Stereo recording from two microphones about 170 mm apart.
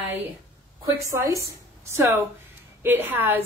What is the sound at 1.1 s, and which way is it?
Speech, 20° right (ahead or behind).